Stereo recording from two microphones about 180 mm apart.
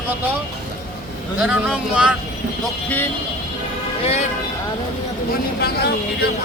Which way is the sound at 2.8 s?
10° left (ahead or behind).